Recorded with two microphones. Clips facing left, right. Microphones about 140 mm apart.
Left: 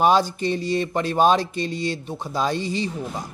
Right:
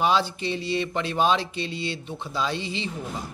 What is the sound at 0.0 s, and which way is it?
A man's voice, 45° left (ahead or behind).